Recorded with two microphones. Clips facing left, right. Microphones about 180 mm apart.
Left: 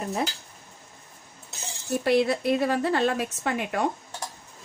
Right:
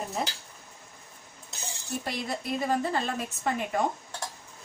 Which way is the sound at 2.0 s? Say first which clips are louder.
Left 14 dB; 70° left (ahead or behind).